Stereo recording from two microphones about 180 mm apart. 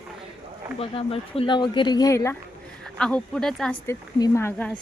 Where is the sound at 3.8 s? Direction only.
20° left (ahead or behind).